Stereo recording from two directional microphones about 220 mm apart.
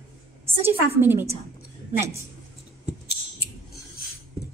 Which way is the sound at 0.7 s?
10° right (ahead or behind).